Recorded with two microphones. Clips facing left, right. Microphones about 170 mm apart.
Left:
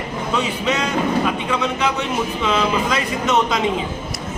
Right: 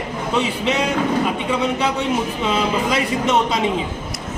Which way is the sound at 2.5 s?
30° right (ahead or behind).